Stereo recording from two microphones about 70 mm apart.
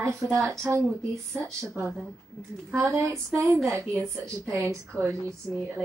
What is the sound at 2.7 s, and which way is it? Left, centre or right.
A woman's voice, right.